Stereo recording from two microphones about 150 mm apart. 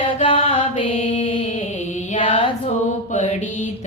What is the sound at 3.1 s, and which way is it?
Mantra, 55° left (ahead or behind).